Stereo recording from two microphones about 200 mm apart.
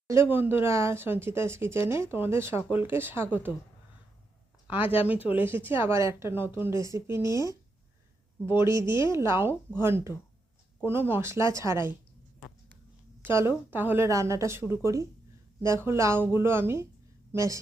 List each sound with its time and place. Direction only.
0.1 s speech: 10° right (ahead or behind)
5.3 s speech: 10° right (ahead or behind)
13.2 s speech: 10° right (ahead or behind)